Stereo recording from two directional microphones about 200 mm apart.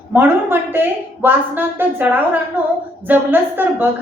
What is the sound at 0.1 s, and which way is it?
A woman's voice, 10° right (ahead or behind).